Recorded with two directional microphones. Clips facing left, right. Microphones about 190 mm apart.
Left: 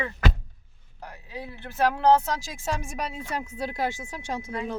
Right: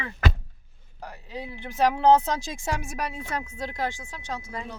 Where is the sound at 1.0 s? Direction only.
15° right (ahead or behind).